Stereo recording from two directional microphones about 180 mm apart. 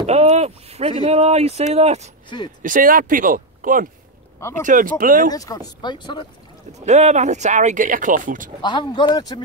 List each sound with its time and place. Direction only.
0.0 s speech: 35° right (ahead or behind)
2.2 s speech: 25° left (ahead or behind)
2.6 s speech: 50° right (ahead or behind)
5.3 s speech: 20° left (ahead or behind)
6.8 s speech: 40° right (ahead or behind)
8.6 s speech: 25° left (ahead or behind)